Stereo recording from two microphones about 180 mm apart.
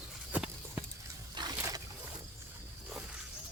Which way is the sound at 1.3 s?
20° right (ahead or behind).